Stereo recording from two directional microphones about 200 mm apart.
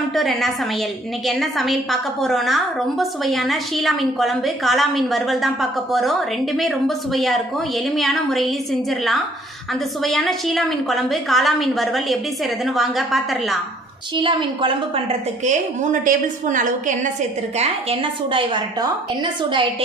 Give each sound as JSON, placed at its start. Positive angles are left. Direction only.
{"t": 0.1, "sound": "a woman's voice", "side_deg": 0}
{"t": 10.0, "sound": "a woman's voice", "side_deg": 0}
{"t": 14.1, "sound": "a woman's voice", "side_deg": -25}
{"t": 15.4, "sound": "a woman's voice", "side_deg": -40}
{"t": 17.6, "sound": "a woman's voice", "side_deg": -30}